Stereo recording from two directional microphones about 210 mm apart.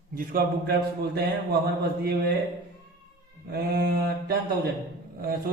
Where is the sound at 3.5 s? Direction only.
50° right (ahead or behind).